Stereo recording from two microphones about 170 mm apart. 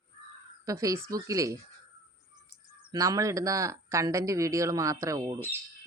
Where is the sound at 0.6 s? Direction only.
20° right (ahead or behind).